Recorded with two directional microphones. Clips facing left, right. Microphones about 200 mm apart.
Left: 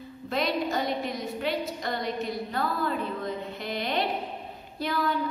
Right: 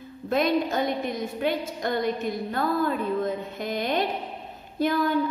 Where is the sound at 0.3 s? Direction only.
50° right (ahead or behind).